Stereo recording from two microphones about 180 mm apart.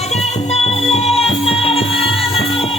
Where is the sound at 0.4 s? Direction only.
35° left (ahead or behind).